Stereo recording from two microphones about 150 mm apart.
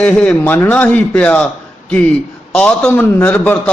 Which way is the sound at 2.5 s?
10° left (ahead or behind).